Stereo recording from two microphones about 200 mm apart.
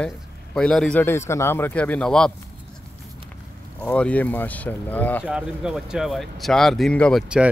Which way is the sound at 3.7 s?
5° left (ahead or behind).